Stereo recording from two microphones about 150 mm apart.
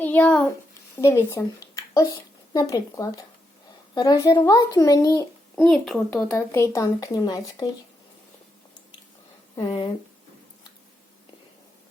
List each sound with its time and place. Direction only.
0.0 s a child's voice: 10° left (ahead or behind)
5.5 s speech: centre (ahead or behind)
6.3 s speech: 15° left (ahead or behind)
9.6 s speech: 35° left (ahead or behind)